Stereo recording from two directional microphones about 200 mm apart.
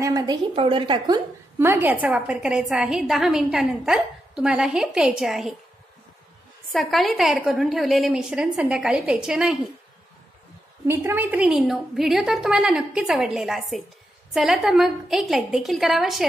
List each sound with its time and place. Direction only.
0.0 s a sound: 20° right (ahead or behind)
0.6 s a woman's voice: 25° right (ahead or behind)
1.6 s a woman's voice: 10° right (ahead or behind)
6.7 s a woman's voice: centre (ahead or behind)
10.9 s a woman's voice: 10° right (ahead or behind)